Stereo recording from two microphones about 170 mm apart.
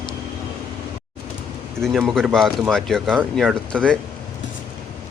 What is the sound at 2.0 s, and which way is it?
A man's voice, centre (ahead or behind).